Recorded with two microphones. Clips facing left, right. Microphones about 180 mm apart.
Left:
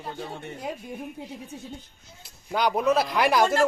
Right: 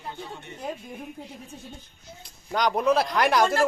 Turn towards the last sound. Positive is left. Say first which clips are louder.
# even
turn(degrees=5)  # may be behind; listen again after turning